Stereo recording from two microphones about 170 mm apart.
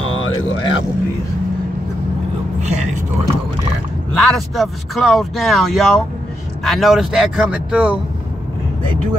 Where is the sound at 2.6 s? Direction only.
45° right (ahead or behind).